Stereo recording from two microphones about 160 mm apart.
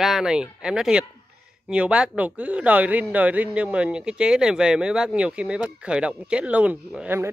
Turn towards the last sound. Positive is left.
turn(degrees=-5)  # may be behind; listen again after turning